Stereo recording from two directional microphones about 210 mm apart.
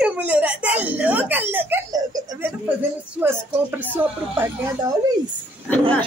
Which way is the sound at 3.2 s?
10° right (ahead or behind).